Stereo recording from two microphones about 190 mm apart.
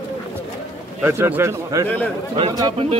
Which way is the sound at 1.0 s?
10° right (ahead or behind).